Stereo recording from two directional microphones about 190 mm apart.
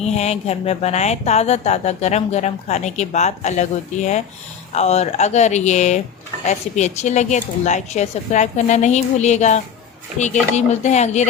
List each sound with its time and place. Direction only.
0.0 s speech: 35° left (ahead or behind)